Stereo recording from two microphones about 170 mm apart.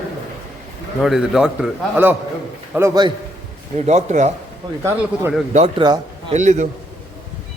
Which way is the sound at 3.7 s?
40° right (ahead or behind).